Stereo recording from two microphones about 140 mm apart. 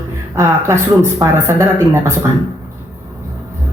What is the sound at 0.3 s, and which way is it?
A woman's voice, 20° right (ahead or behind).